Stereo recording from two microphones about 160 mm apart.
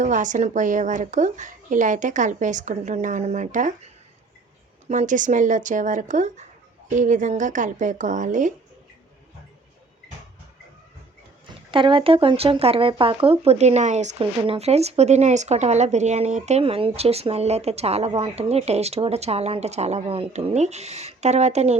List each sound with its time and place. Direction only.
0.0 s a woman's voice: 50° right (ahead or behind)
11.7 s speech: 30° right (ahead or behind)